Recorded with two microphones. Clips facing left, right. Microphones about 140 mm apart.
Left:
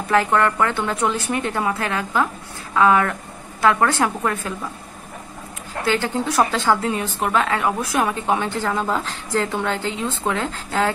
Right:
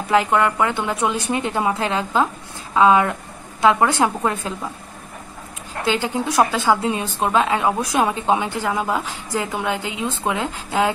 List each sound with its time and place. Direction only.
0.1 s a woman's voice: 15° right (ahead or behind)
5.9 s a woman's voice: 15° right (ahead or behind)